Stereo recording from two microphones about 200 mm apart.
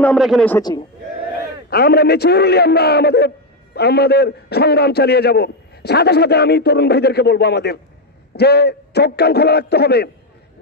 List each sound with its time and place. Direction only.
0.0 s a man's voice: centre (ahead or behind)
0.6 s speech: 20° left (ahead or behind)
1.7 s a man's voice: 50° left (ahead or behind)